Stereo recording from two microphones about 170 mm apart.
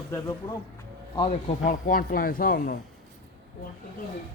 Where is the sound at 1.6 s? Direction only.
50° left (ahead or behind).